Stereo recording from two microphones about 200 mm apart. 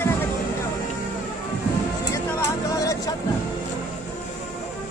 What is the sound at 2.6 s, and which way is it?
Music, 15° left (ahead or behind).